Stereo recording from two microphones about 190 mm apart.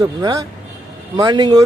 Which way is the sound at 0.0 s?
20° right (ahead or behind).